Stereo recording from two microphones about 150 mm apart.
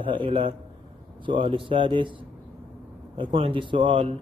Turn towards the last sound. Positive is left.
turn(degrees=-35)  # may be behind; listen again after turning